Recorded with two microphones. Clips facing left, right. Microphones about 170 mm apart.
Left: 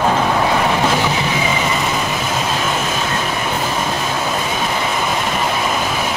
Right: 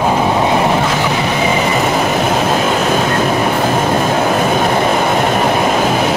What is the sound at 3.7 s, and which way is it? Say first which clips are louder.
Train: right 7 dB; 55° right (ahead or behind).